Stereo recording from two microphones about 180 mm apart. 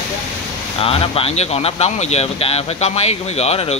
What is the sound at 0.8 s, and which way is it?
Speech, 30° left (ahead or behind).